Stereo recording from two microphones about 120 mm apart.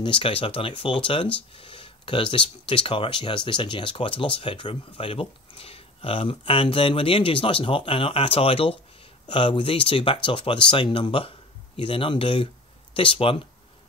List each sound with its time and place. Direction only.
0.0 s speech: 45° left (ahead or behind)